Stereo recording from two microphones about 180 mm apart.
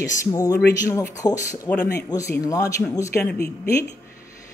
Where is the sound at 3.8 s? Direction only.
15° left (ahead or behind).